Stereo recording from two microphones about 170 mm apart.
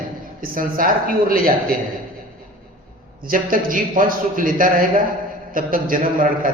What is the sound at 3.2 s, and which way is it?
A man's voice, 55° right (ahead or behind).